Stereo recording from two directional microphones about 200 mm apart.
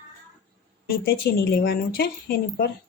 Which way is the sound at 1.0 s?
50° left (ahead or behind).